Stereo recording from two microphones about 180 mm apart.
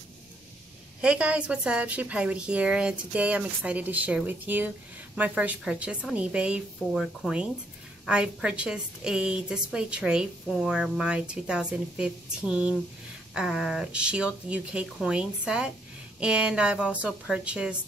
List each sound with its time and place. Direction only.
1.0 s a woman's voice: 5° right (ahead or behind)